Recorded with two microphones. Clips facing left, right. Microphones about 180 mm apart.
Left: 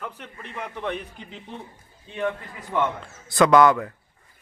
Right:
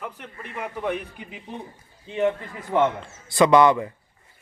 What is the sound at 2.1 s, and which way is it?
Speech, 25° right (ahead or behind).